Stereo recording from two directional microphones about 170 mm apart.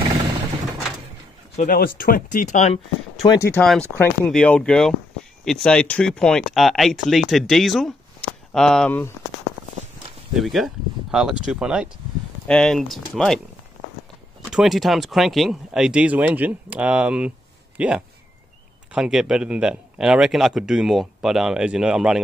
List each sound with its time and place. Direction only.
1.6 s speech: 55° left (ahead or behind); by 3.3 s 40° left (ahead or behind)
3.3 s speech: 15° left (ahead or behind)
10.3 s speech: centre (ahead or behind)
14.5 s speech: centre (ahead or behind)